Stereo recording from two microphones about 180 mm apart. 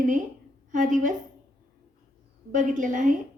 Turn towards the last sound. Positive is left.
turn(degrees=-45)  # may be behind; listen again after turning